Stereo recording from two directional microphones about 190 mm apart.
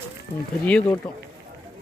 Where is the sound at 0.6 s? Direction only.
5° left (ahead or behind).